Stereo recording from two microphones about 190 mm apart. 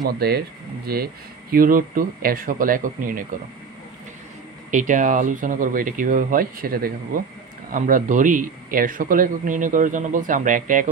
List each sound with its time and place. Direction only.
0.0 s a man's voice: 55° right (ahead or behind)
4.6 s a man's voice: 40° right (ahead or behind)